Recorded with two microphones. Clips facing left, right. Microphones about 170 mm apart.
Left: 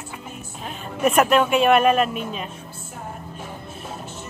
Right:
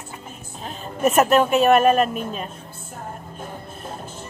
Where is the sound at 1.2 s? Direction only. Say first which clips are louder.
Right 1 dB; 40° right (ahead or behind).